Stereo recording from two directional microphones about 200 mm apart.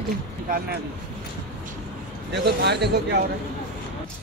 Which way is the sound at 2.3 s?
55° right (ahead or behind).